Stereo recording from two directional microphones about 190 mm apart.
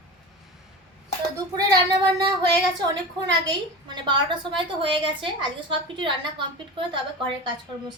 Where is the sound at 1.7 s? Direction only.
20° right (ahead or behind).